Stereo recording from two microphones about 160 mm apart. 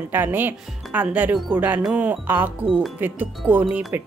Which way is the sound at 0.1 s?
15° right (ahead or behind).